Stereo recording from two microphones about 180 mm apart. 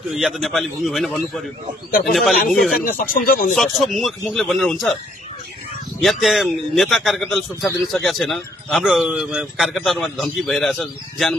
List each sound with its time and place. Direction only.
0.1 s a man's voice: centre (ahead or behind)
1.9 s speech: 50° left (ahead or behind)
2.5 s a man's voice: centre (ahead or behind)
2.8 s speech: 50° left (ahead or behind)
3.5 s a man's voice: centre (ahead or behind)
5.9 s a man's voice: centre (ahead or behind)